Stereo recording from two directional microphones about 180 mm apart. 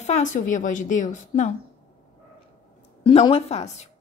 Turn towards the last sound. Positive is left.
turn(degrees=40)  # may be behind; listen again after turning